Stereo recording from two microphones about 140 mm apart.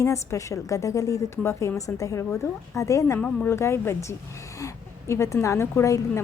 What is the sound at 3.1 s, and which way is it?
A woman's voice, 10° left (ahead or behind).